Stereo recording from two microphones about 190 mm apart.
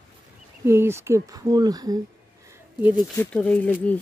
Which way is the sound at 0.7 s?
15° right (ahead or behind).